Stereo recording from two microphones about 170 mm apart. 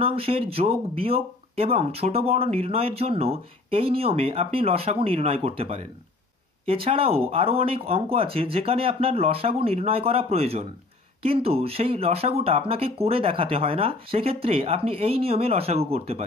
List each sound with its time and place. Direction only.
0.0 s speech: 35° right (ahead or behind)